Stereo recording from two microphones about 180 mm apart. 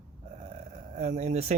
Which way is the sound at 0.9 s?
40° right (ahead or behind).